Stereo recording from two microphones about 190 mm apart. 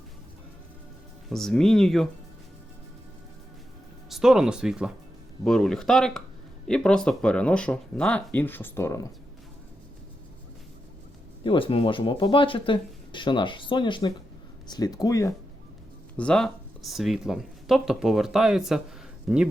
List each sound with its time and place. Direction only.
1.3 s speech: centre (ahead or behind)
4.1 s speech: 5° right (ahead or behind); by 9.0 s 15° left (ahead or behind)
11.4 s speech: 25° left (ahead or behind)
16.1 s speech: 5° left (ahead or behind)